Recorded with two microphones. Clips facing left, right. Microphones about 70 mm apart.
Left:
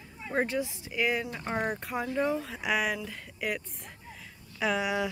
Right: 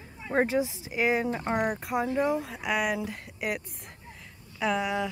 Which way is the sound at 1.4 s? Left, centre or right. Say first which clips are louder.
Right 3 dB; centre.